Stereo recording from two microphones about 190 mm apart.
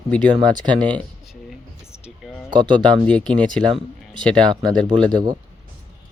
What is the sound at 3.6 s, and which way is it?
Speech, 25° right (ahead or behind).